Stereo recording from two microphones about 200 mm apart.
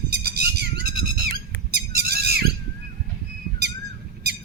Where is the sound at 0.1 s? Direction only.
55° right (ahead or behind).